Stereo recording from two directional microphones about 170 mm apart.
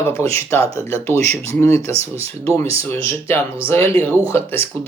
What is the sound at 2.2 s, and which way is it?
Speech, 35° right (ahead or behind).